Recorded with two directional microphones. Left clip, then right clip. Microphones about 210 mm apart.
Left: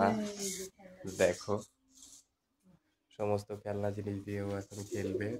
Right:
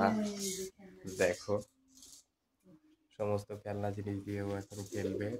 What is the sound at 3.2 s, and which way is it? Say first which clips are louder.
Speech: left 2 dB; 20° left (ahead or behind).